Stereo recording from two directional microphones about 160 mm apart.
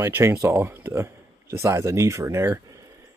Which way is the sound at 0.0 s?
15° right (ahead or behind).